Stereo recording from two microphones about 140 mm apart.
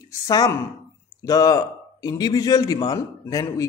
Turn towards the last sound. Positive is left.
turn(degrees=25)  # may be behind; listen again after turning